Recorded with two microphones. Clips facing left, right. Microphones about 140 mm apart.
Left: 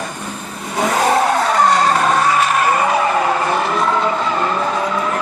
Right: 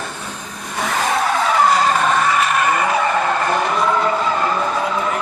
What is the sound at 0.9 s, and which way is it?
Vehicle, 35° left (ahead or behind).